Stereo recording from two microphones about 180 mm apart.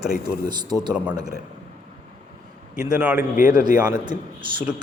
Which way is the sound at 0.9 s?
10° right (ahead or behind).